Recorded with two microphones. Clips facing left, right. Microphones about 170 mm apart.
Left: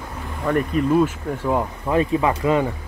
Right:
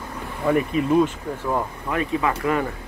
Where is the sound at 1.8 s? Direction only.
25° left (ahead or behind).